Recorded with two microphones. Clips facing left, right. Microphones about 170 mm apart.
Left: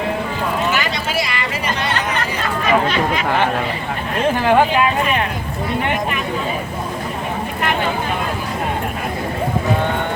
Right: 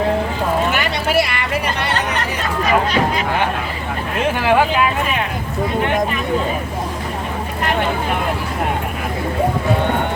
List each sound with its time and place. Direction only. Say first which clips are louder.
0.7 s vehicle: right 2 dB; 60° right (ahead or behind)
4.4 s speech: left 1 dB; centre (ahead or behind)